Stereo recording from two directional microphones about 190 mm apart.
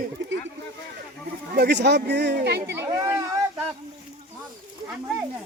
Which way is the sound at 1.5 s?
60° right (ahead or behind).